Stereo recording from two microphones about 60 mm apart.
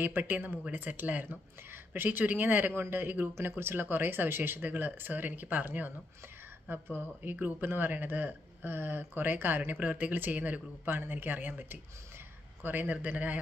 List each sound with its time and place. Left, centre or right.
0.0 s a man's voice: right